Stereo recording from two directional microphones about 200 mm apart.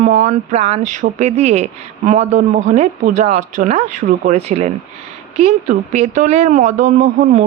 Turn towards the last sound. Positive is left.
turn(degrees=-35)  # may be behind; listen again after turning